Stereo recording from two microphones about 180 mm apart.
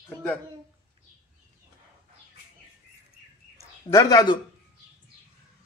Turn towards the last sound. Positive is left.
turn(degrees=20)  # may be behind; listen again after turning